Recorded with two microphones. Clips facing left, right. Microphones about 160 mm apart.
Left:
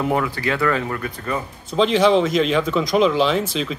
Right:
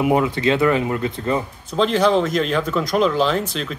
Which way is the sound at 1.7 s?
Centre (ahead or behind).